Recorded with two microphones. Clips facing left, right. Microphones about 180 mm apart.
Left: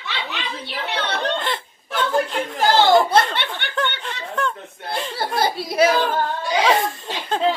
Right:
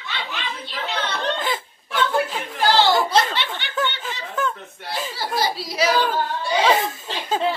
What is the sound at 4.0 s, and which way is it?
Snicker, centre (ahead or behind).